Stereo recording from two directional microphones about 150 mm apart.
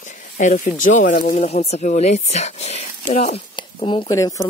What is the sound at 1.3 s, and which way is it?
Speech, 45° left (ahead or behind).